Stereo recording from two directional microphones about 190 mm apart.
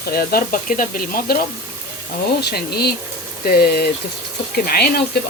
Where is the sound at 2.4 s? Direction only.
55° left (ahead or behind).